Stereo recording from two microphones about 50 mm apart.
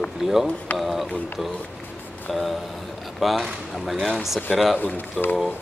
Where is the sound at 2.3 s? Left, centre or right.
Centre.